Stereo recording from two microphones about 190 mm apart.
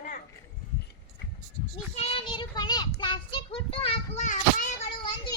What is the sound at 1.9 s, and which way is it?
A child's voice, 30° left (ahead or behind).